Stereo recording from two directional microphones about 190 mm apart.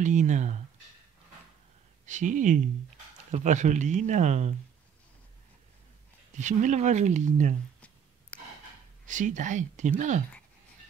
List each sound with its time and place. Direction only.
0.0 s speech: 40° right (ahead or behind)
2.0 s speech: 40° right (ahead or behind)
6.3 s speech: 40° right (ahead or behind)
8.3 s a sound: 5° left (ahead or behind)
9.0 s speech: 40° right (ahead or behind)